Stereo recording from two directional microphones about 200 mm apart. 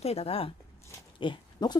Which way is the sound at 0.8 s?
25° left (ahead or behind).